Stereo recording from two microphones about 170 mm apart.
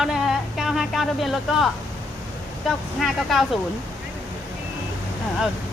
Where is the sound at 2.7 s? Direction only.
Centre (ahead or behind).